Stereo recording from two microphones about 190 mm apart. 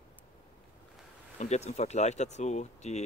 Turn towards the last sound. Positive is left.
turn(degrees=35)  # may be behind; listen again after turning